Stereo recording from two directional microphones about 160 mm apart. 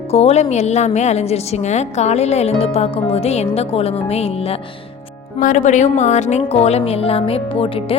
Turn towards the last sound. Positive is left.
turn(degrees=35)  # may be behind; listen again after turning